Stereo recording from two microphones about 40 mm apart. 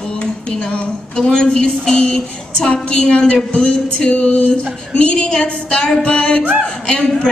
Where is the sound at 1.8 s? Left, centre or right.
Centre.